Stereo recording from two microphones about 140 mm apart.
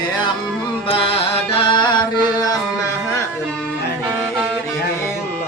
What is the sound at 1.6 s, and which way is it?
Music, 35° left (ahead or behind).